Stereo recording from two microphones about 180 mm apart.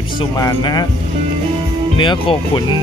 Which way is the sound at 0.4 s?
20° left (ahead or behind).